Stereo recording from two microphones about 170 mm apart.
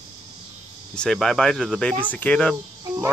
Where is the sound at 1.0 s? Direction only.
Centre (ahead or behind).